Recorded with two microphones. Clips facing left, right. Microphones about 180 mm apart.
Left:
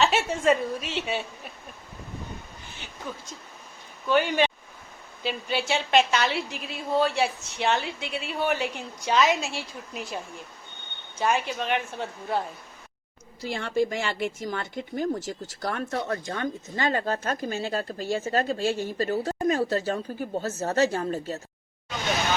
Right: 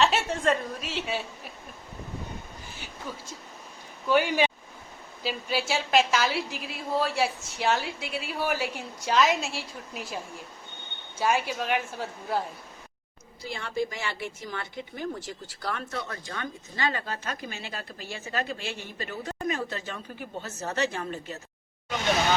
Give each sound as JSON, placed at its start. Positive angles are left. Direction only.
{"t": 0.0, "sound": "a woman's voice", "side_deg": 0}
{"t": 4.1, "sound": "a woman's voice", "side_deg": -10}
{"t": 11.2, "sound": "a woman's voice", "side_deg": -5}
{"t": 13.5, "sound": "speech", "side_deg": 55}